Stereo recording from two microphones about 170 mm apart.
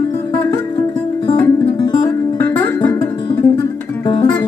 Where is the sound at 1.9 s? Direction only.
20° left (ahead or behind).